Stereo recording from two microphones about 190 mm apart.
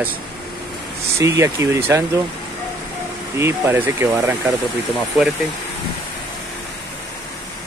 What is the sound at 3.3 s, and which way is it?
Speech, 15° right (ahead or behind).